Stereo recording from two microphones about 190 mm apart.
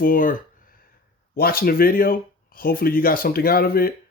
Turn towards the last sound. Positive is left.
turn(degrees=55)  # may be behind; listen again after turning